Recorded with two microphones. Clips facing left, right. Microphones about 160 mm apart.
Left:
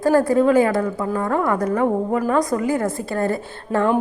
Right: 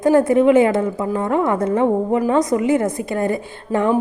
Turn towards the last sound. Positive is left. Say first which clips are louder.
# right 1 dB
turn(degrees=-15)  # may be behind; listen again after turning